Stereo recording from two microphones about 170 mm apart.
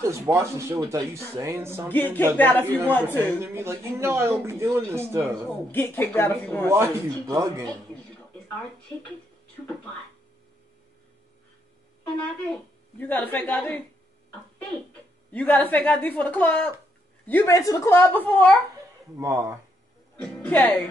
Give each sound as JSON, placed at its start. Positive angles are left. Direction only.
{"t": 0.0, "sound": "a man's voice", "side_deg": -15}
{"t": 1.9, "sound": "a woman's voice", "side_deg": 10}
{"t": 3.3, "sound": "a man's voice", "side_deg": -15}
{"t": 5.7, "sound": "a woman's voice", "side_deg": 10}
{"t": 6.7, "sound": "speech", "side_deg": -15}
{"t": 13.0, "sound": "a woman's voice", "side_deg": 10}
{"t": 15.3, "sound": "a woman's voice", "side_deg": 10}
{"t": 19.1, "sound": "a man's voice", "side_deg": -20}
{"t": 20.2, "sound": "a woman's voice", "side_deg": 10}